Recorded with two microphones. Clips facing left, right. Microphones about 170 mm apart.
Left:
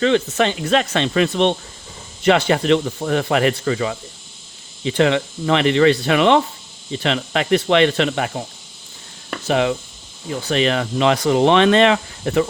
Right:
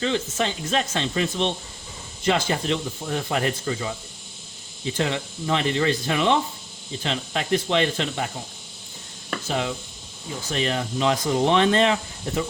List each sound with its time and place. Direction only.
0.0 s speech: 70° left (ahead or behind)
9.5 s speech: 75° left (ahead or behind)